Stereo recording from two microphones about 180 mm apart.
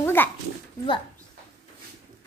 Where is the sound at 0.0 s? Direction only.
10° left (ahead or behind).